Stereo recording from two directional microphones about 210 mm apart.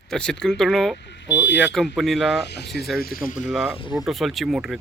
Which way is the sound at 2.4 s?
50° left (ahead or behind).